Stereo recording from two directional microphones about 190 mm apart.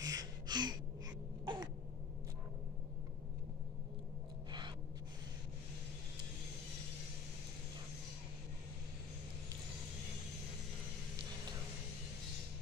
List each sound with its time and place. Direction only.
0.0 s gasp: 20° right (ahead or behind)
1.4 s a sound: 25° right (ahead or behind)
4.5 s gasp: 25° right (ahead or behind)